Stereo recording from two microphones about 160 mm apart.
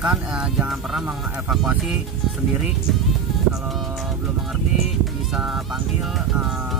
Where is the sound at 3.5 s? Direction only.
Centre (ahead or behind).